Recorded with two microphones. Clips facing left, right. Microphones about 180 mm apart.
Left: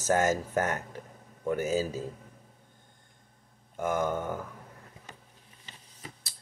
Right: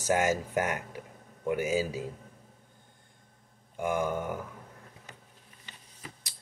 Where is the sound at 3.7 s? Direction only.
10° right (ahead or behind).